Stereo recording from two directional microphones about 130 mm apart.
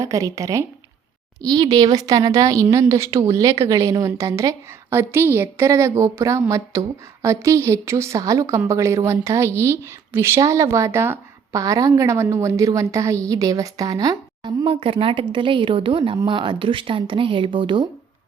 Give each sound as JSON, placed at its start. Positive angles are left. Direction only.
{"t": 0.0, "sound": "a woman's voice", "side_deg": -25}